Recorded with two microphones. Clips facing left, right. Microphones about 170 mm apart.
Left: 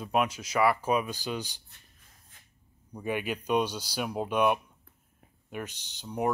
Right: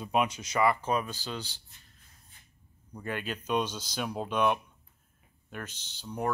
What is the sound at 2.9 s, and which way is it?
Speech, 15° left (ahead or behind).